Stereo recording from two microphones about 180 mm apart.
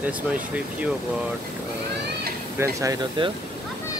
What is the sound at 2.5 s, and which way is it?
Speech, 20° right (ahead or behind).